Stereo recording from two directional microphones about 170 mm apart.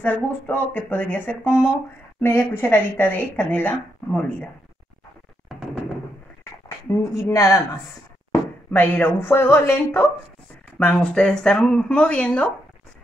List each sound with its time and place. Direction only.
0.0 s speech: 10° left (ahead or behind)
6.9 s speech: 15° left (ahead or behind)